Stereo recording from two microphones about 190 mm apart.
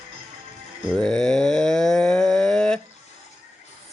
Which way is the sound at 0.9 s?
5° left (ahead or behind).